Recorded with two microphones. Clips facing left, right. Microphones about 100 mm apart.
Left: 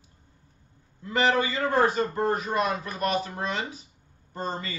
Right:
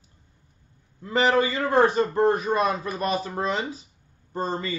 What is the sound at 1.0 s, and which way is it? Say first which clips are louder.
A man's voice: right 3 dB; 30° right (ahead or behind).